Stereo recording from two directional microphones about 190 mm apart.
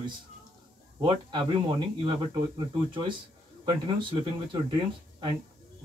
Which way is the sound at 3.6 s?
25° right (ahead or behind).